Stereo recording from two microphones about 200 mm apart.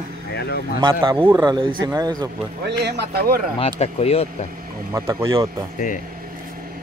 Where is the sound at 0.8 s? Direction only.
20° right (ahead or behind).